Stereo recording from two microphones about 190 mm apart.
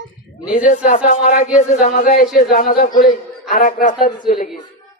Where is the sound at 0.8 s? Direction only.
40° left (ahead or behind).